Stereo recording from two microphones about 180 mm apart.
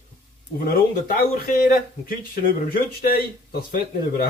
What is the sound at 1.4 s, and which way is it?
Speech, 55° left (ahead or behind).